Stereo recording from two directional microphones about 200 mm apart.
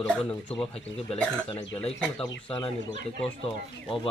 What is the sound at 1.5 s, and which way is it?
Speech, 30° left (ahead or behind).